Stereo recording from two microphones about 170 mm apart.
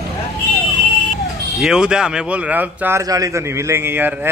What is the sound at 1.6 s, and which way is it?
A man's voice, 5° right (ahead or behind).